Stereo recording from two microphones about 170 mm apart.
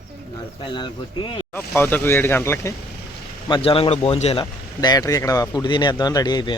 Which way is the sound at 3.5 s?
30° left (ahead or behind).